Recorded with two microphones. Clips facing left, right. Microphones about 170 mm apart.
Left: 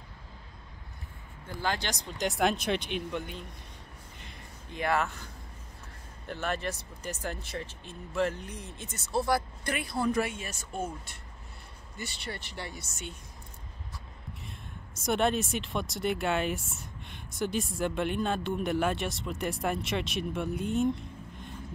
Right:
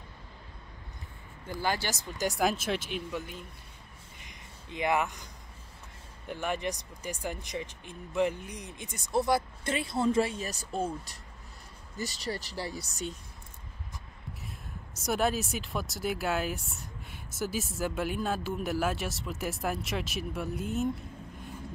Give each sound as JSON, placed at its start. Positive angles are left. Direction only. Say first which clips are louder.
{"t": 1.6, "sound": "speech", "louder": "right 1 dB", "side_deg": -5}
{"t": 4.2, "sound": "a sound", "louder": "left 2 dB", "side_deg": -15}
{"t": 6.2, "sound": "speech", "louder": "right 1 dB", "side_deg": -15}
{"t": 15.0, "sound": "speech", "louder": "left 2 dB", "side_deg": 0}